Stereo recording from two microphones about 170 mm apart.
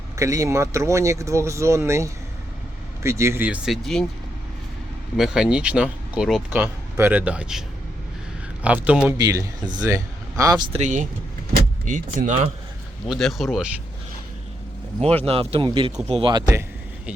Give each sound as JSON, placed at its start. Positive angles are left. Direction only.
{"t": 0.2, "sound": "speech", "side_deg": -20}
{"t": 5.1, "sound": "speech", "side_deg": -5}
{"t": 8.6, "sound": "speech", "side_deg": -10}
{"t": 9.1, "sound": "speech", "side_deg": -20}
{"t": 10.7, "sound": "speech", "side_deg": -45}
{"t": 13.1, "sound": "speech", "side_deg": 0}
{"t": 15.2, "sound": "speech", "side_deg": -35}